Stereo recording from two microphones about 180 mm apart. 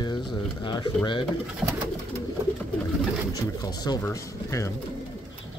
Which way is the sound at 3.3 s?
20° left (ahead or behind).